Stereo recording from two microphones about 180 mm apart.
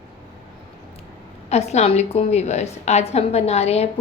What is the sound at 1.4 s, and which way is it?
A woman's voice, 35° left (ahead or behind).